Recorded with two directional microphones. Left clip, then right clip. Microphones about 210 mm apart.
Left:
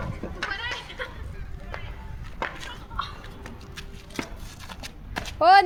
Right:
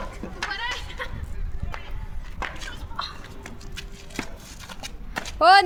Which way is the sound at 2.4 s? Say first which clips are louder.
Left 1 dB; 45° right (ahead or behind).